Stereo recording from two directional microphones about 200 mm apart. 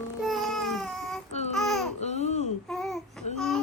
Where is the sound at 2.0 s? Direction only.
35° left (ahead or behind).